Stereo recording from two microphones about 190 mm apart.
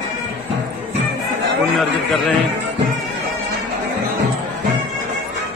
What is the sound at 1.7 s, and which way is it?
Speech, centre (ahead or behind).